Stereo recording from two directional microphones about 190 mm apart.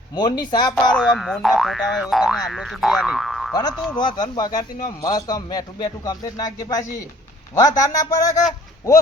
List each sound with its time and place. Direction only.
0.1 s a man's voice: 20° left (ahead or behind)
0.9 s speech: centre (ahead or behind)
3.5 s a man's voice: 20° left (ahead or behind)